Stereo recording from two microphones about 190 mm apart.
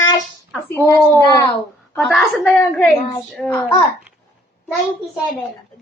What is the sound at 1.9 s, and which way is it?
A child's voice, centre (ahead or behind).